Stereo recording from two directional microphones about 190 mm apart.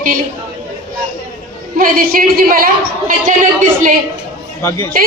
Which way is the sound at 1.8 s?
50° right (ahead or behind).